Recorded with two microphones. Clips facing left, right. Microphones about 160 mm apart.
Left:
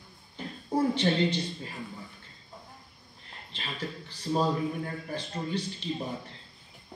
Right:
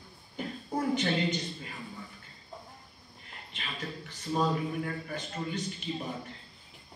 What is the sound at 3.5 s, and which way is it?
Speech, 35° left (ahead or behind).